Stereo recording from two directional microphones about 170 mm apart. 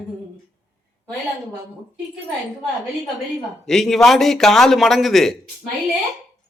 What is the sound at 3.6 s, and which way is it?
Speech, centre (ahead or behind).